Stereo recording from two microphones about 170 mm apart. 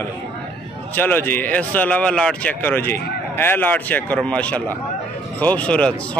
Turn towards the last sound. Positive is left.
turn(degrees=5)  # may be behind; listen again after turning